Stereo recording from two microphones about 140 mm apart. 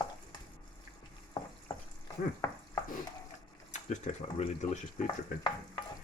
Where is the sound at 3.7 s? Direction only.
55° left (ahead or behind).